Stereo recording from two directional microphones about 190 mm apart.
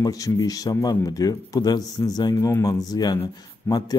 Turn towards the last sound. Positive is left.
turn(degrees=20)  # may be behind; listen again after turning